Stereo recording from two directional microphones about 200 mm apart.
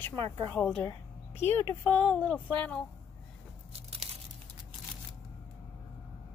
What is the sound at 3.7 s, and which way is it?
Tearing, 30° right (ahead or behind).